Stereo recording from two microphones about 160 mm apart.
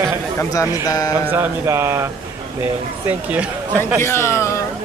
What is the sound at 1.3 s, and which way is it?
Speech, 15° right (ahead or behind).